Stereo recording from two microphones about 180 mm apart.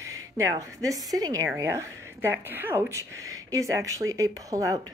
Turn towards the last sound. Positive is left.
turn(degrees=-20)  # may be behind; listen again after turning